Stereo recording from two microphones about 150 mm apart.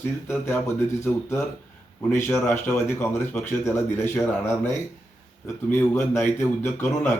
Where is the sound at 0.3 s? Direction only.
15° left (ahead or behind).